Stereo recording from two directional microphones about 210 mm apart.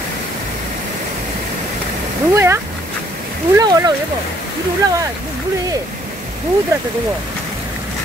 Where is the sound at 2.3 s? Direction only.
10° right (ahead or behind).